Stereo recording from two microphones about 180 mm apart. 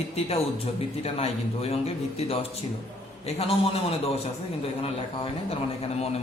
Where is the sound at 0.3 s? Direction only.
35° left (ahead or behind).